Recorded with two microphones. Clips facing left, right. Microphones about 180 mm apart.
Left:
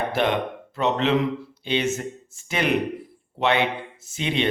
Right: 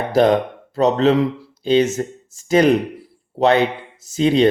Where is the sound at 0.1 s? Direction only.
40° right (ahead or behind).